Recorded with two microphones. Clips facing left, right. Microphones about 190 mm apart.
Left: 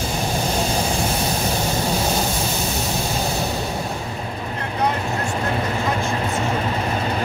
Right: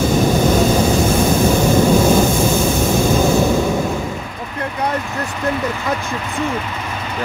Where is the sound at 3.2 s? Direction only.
50° right (ahead or behind).